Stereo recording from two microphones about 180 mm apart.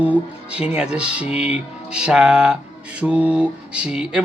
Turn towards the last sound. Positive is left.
turn(degrees=-5)  # may be behind; listen again after turning